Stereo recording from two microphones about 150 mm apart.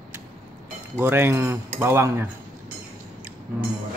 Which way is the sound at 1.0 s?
15° right (ahead or behind).